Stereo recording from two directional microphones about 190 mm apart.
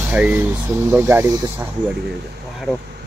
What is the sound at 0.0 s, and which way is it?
Speech, 5° right (ahead or behind).